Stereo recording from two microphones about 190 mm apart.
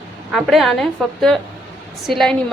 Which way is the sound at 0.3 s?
Centre (ahead or behind).